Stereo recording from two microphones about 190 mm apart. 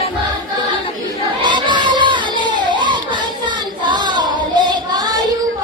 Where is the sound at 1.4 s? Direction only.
25° right (ahead or behind).